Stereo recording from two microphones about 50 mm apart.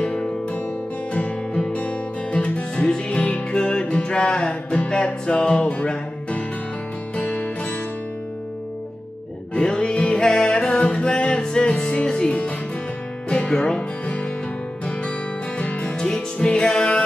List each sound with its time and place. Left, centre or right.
0.0 s music: centre
9.5 s music: centre